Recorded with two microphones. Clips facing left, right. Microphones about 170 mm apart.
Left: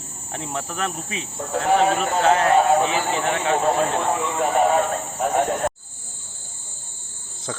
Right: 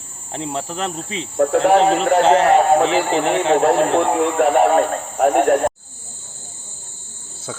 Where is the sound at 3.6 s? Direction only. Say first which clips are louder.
Right 6 dB; 85° right.